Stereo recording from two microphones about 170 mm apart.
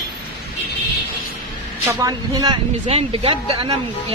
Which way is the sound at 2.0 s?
20° right (ahead or behind).